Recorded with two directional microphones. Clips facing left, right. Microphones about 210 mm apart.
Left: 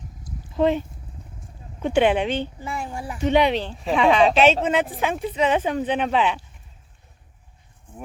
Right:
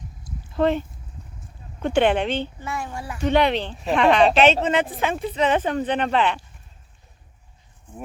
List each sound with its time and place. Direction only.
0.5 s speech: 10° left (ahead or behind)